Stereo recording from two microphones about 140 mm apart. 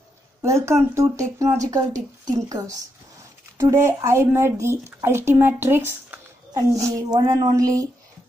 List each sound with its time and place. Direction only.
0.4 s speech: 20° right (ahead or behind)
6.5 s speech: 25° right (ahead or behind)